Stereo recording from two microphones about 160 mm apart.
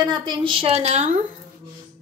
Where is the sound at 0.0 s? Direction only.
25° right (ahead or behind); by 1.1 s 45° right (ahead or behind).